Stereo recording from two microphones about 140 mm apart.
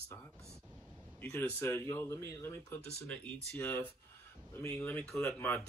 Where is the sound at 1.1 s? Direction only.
15° left (ahead or behind).